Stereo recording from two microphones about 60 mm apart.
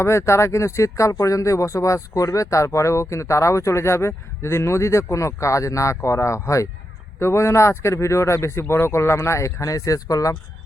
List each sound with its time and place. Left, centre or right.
0.0 s speech: left
7.2 s speech: left